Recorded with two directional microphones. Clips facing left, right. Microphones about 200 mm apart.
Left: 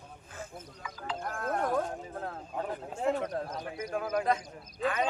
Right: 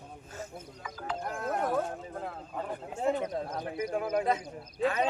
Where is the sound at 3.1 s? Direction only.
20° right (ahead or behind).